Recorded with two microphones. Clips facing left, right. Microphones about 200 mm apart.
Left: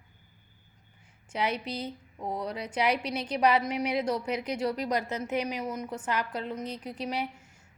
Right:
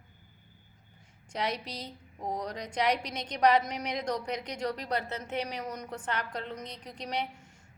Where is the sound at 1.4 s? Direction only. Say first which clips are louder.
Left 3 dB; 35° right (ahead or behind).